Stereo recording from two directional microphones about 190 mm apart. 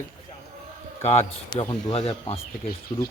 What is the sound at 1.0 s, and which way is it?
Speech, 35° left (ahead or behind).